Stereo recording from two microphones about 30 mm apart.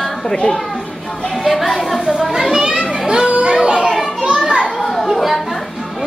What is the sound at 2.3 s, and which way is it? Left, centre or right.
Children playing, centre.